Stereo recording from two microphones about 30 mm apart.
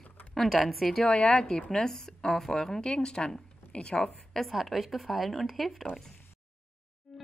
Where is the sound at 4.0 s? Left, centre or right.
Centre.